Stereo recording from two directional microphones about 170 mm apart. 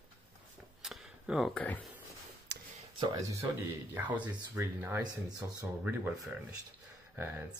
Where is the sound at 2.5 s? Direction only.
85° right.